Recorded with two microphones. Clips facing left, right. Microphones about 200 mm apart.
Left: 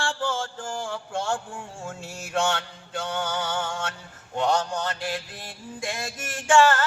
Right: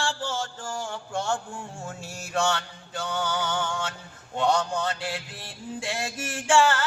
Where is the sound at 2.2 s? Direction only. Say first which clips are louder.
Left 1 dB; 50° left (ahead or behind).